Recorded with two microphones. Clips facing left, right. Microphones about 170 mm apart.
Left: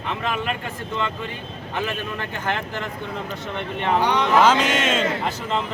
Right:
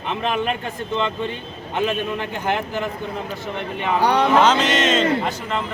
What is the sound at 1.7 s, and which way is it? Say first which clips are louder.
A man's voice: right 5 dB; 15° right (ahead or behind).